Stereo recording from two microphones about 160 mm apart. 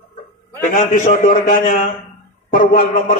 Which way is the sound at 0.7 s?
50° left (ahead or behind).